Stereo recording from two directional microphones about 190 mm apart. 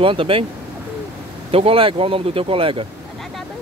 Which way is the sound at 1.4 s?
30° right (ahead or behind).